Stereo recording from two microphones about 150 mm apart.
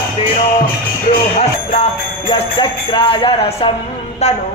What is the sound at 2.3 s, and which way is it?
Speech, 30° left (ahead or behind).